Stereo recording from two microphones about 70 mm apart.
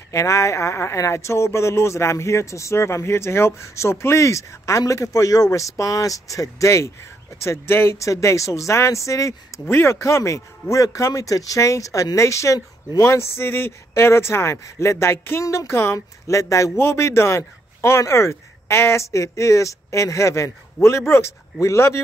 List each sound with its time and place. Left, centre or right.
0.1 s speech: left